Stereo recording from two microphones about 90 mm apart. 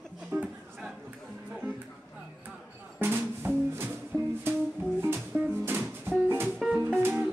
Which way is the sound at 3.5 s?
25° right (ahead or behind).